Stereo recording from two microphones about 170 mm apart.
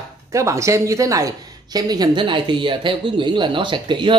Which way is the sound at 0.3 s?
20° right (ahead or behind).